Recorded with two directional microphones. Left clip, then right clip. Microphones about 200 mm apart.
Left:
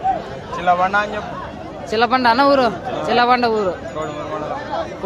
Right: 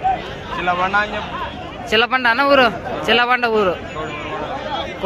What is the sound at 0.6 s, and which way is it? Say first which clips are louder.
Speech: left 2 dB; 60° left (ahead or behind).